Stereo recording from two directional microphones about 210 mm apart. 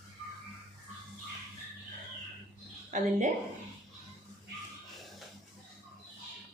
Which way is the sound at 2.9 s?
40° right (ahead or behind).